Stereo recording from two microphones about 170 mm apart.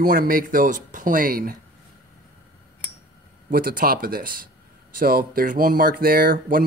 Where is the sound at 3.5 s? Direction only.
60° right (ahead or behind).